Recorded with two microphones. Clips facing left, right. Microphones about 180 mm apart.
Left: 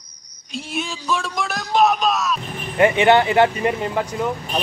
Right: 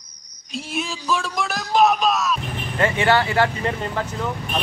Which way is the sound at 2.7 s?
20° left (ahead or behind).